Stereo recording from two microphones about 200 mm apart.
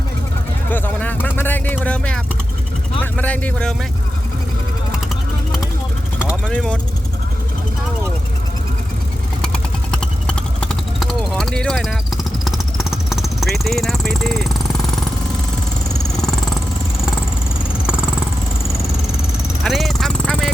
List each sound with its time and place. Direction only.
0.7 s vehicle: 10° left (ahead or behind)
3.0 s speech: 10° left (ahead or behind)
6.2 s speech: 5° left (ahead or behind)
9.4 s vehicle: 5° left (ahead or behind)
17.8 s vehicle: 5° right (ahead or behind)
19.6 s vehicle: centre (ahead or behind)